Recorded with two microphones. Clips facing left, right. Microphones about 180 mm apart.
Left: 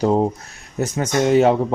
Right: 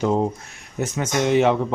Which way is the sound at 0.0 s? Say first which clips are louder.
Left 3 dB; 35° left (ahead or behind).